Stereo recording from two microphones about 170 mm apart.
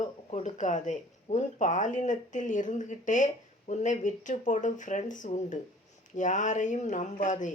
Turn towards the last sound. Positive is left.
turn(degrees=45)  # may be behind; listen again after turning